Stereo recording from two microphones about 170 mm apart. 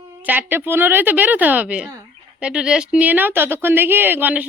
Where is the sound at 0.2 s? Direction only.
10° right (ahead or behind).